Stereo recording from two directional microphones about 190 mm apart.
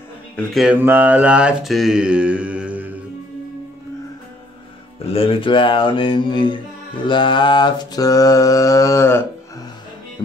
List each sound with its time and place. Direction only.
0.4 s mantra: centre (ahead or behind)
4.9 s a sound: 30° left (ahead or behind)
7.1 s mantra: 25° left (ahead or behind)